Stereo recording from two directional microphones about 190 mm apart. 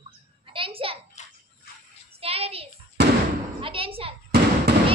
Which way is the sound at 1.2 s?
40° left (ahead or behind).